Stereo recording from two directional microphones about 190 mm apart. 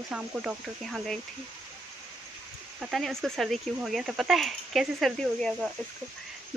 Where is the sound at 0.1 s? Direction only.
5° right (ahead or behind).